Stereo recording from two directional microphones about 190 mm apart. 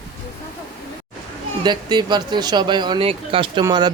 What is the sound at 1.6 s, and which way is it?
Speech, 20° right (ahead or behind).